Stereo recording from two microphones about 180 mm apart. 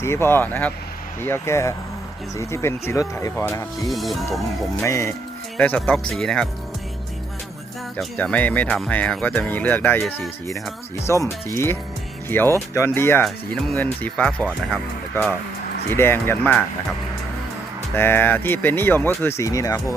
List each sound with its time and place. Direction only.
0.0 s speech: 15° left (ahead or behind)
3.8 s speech: centre (ahead or behind)
4.8 s speech: 15° left (ahead or behind)
7.9 s speech: 10° left (ahead or behind)
13.2 s speech: 5° left (ahead or behind)
17.9 s speech: 10° left (ahead or behind)